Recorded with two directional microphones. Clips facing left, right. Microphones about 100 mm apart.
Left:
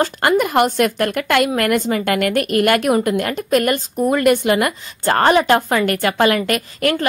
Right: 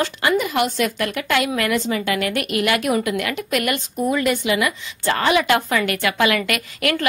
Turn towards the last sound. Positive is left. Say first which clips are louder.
# left 3 dB
turn(degrees=35)  # may be behind; listen again after turning